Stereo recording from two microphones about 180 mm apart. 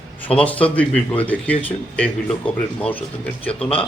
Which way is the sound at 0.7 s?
10° left (ahead or behind).